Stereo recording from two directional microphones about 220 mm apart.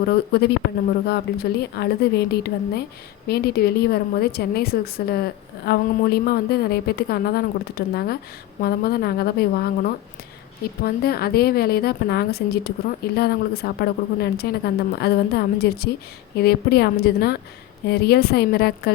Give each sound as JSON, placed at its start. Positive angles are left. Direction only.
{"t": 0.1, "sound": "a woman's voice", "side_deg": 50}